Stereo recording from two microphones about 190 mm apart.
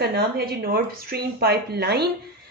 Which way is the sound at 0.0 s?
60° right (ahead or behind).